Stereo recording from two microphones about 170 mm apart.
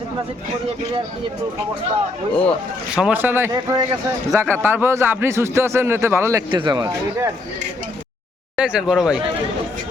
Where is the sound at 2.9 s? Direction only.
10° right (ahead or behind); by 7.3 s 25° right (ahead or behind).